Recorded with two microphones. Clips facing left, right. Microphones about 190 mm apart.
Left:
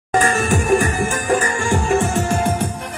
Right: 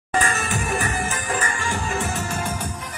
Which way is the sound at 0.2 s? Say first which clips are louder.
Left 8 dB; 50° left (ahead or behind).